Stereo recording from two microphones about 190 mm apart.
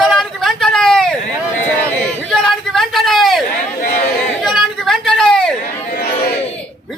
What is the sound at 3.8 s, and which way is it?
Speech, 50° left (ahead or behind).